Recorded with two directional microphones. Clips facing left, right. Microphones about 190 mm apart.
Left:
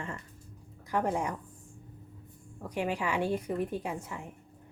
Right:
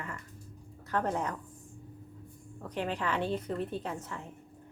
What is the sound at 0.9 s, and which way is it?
Speech, 10° left (ahead or behind).